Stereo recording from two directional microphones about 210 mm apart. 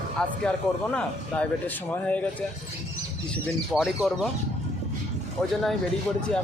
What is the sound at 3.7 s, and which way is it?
Speech, centre (ahead or behind).